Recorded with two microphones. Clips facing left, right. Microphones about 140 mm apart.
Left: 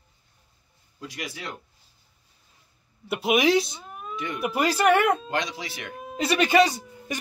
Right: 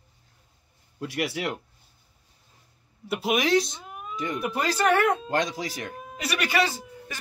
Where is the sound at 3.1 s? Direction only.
Centre (ahead or behind).